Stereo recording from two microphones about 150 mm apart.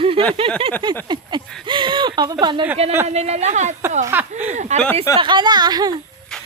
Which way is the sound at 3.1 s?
45° right (ahead or behind).